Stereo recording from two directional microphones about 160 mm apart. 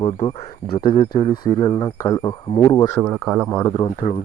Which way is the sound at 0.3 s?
35° left (ahead or behind).